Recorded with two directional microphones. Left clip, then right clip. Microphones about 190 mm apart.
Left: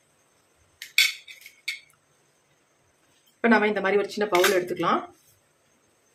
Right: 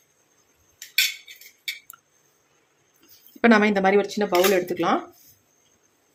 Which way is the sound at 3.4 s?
50° right (ahead or behind).